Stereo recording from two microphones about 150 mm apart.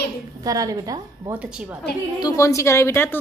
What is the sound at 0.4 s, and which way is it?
Speech, 25° right (ahead or behind).